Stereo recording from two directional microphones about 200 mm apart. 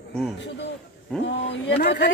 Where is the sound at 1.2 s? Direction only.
60° left (ahead or behind).